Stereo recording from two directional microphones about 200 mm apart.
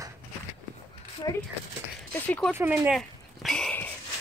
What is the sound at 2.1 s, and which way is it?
Speech, 5° left (ahead or behind).